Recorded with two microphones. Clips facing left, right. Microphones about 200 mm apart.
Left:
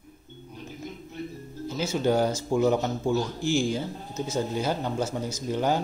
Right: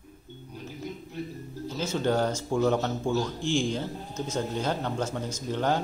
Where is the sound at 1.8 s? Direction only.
10° left (ahead or behind).